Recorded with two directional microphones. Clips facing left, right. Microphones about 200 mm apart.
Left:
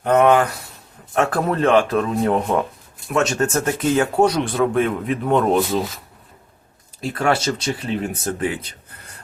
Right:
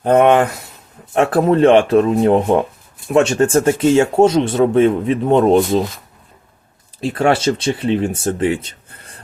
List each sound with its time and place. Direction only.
0.0 s speech: 30° right (ahead or behind)
7.0 s speech: 30° right (ahead or behind)